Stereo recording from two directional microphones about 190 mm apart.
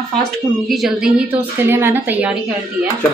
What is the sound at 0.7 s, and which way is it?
A woman's voice, 5° right (ahead or behind).